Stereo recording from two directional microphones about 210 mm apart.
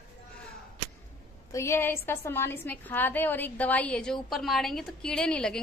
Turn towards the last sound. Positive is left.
turn(degrees=5)  # may be behind; listen again after turning